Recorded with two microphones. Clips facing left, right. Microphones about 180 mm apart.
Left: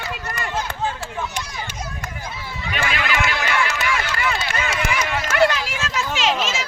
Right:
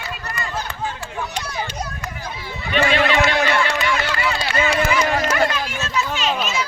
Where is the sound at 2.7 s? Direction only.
30° right (ahead or behind).